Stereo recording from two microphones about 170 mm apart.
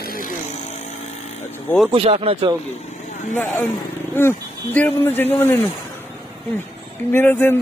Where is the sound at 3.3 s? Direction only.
10° left (ahead or behind).